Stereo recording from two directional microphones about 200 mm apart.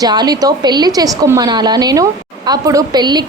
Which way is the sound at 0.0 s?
20° right (ahead or behind).